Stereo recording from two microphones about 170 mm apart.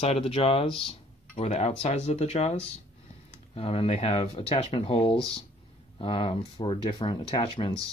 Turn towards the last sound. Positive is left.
turn(degrees=30)  # may be behind; listen again after turning